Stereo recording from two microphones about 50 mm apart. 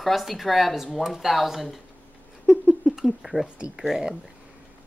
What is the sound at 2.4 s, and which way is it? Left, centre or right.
Rodents, centre.